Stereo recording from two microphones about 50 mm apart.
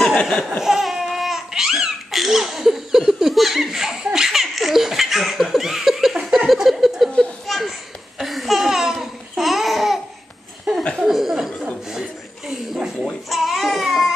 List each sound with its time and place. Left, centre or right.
0.2 s laughter: centre
0.5 s laughter: centre
7.4 s a sound: centre
8.2 s laughter: centre
9.0 s babbling: centre
11.1 s a sound: centre
11.9 s chuckle: centre
13.0 s baby cry: centre